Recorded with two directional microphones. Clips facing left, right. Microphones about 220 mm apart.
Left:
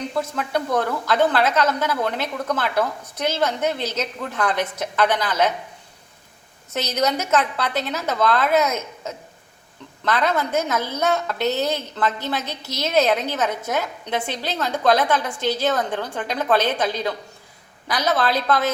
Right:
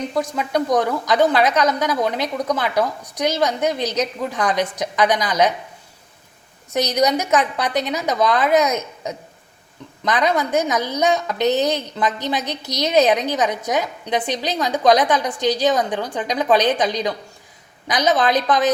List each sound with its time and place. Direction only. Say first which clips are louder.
0.2 s a woman's voice: right 3 dB; 15° right (ahead or behind)
6.7 s a woman's voice: right 4 dB; 15° right (ahead or behind)